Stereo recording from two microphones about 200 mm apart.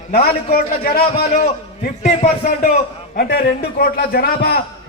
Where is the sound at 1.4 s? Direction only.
40° left (ahead or behind).